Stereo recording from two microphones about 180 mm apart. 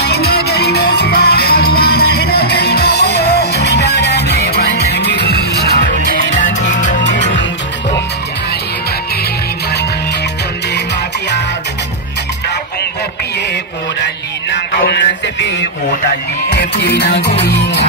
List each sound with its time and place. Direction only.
0.0 s music: 60° left (ahead or behind)
6.3 s music: 45° left (ahead or behind)
7.1 s music: 85° left
14.7 s music: 60° left (ahead or behind); by 15.5 s 80° left
16.5 s music: 70° left (ahead or behind)